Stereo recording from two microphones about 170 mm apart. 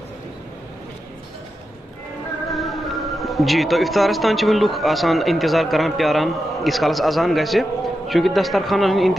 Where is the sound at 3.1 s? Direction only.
Centre (ahead or behind).